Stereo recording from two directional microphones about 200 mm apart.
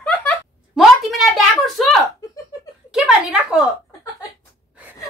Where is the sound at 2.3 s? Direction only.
15° left (ahead or behind).